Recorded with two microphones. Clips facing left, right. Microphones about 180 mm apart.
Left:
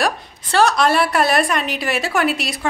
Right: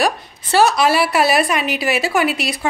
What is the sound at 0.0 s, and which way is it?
A woman's voice, 5° right (ahead or behind).